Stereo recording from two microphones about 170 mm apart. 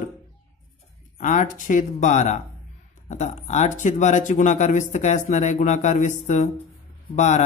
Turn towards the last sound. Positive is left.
turn(degrees=45)  # may be behind; listen again after turning